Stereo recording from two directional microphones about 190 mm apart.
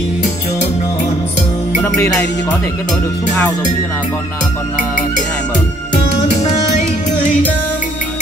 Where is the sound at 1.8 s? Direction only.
10° left (ahead or behind).